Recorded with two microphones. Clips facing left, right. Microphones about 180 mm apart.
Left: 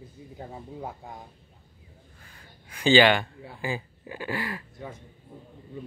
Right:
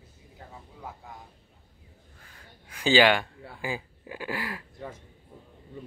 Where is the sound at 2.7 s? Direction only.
5° right (ahead or behind).